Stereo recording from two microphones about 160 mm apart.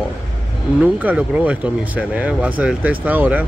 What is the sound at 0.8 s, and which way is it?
Speech, 10° right (ahead or behind).